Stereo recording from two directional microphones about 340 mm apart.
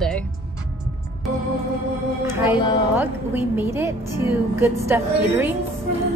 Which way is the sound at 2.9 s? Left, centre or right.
Centre.